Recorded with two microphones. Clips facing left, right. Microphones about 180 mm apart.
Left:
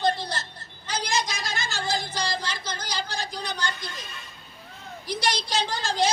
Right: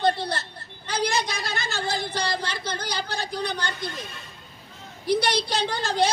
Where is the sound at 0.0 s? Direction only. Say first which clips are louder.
Right 2 dB; 60° right (ahead or behind).